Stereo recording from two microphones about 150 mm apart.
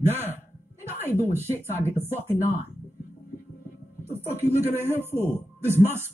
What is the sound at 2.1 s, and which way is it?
Speech, 15° right (ahead or behind).